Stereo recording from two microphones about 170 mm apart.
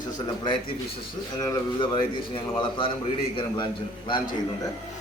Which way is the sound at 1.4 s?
25° left (ahead or behind).